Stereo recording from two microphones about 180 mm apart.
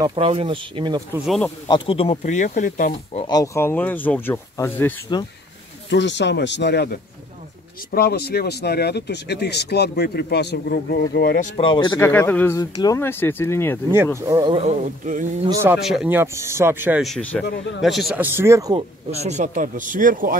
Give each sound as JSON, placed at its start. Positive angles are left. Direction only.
{"t": 0.0, "sound": "speech", "side_deg": -30}
{"t": 1.1, "sound": "speech", "side_deg": 0}
{"t": 1.7, "sound": "speech", "side_deg": 30}
{"t": 3.3, "sound": "speech", "side_deg": 20}
{"t": 5.9, "sound": "speech", "side_deg": 75}
{"t": 7.9, "sound": "speech", "side_deg": 60}
{"t": 11.6, "sound": "speech", "side_deg": 25}
{"t": 12.0, "sound": "speech", "side_deg": 10}
{"t": 14.2, "sound": "speech", "side_deg": -20}
{"t": 14.6, "sound": "a man's voice", "side_deg": -40}
{"t": 15.6, "sound": "speech", "side_deg": -5}
{"t": 17.0, "sound": "speech", "side_deg": 5}
{"t": 19.2, "sound": "speech", "side_deg": -40}